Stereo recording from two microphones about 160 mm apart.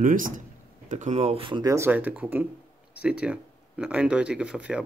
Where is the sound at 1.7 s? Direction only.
15° right (ahead or behind).